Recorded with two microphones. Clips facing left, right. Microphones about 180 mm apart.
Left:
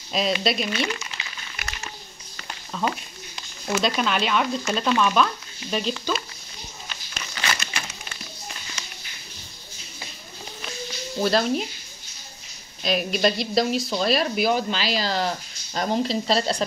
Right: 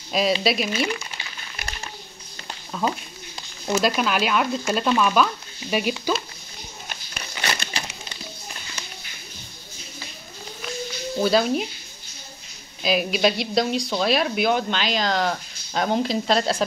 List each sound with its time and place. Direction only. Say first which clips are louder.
0.1 s speech: right 2 dB; centre (ahead or behind)
2.7 s a sound: right 1 dB; 5° right (ahead or behind)
3.8 s speech: right 1 dB; 5° right (ahead or behind)
7.4 s crumpling: right 1 dB; 25° right (ahead or behind)
11.2 s speech: right 1 dB; centre (ahead or behind)
12.8 s speech: right 1 dB; centre (ahead or behind)